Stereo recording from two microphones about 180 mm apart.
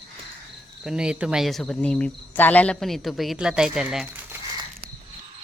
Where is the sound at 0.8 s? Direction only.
5° right (ahead or behind).